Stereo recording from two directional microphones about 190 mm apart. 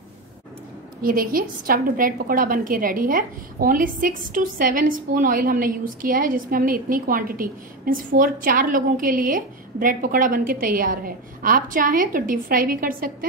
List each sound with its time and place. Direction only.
1.0 s a woman's voice: 50° right (ahead or behind)